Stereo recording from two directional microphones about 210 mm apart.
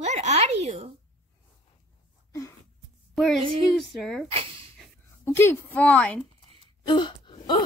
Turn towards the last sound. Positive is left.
turn(degrees=25)  # may be behind; listen again after turning